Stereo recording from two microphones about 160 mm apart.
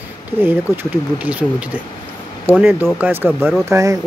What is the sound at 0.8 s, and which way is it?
Speech, 10° right (ahead or behind).